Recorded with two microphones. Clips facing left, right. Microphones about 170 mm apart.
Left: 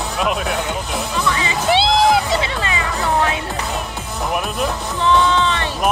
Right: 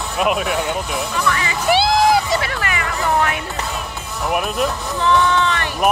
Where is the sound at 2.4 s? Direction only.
25° left (ahead or behind).